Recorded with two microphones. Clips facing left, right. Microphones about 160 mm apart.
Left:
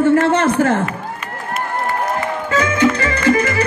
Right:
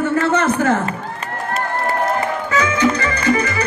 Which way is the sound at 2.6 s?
55° left (ahead or behind).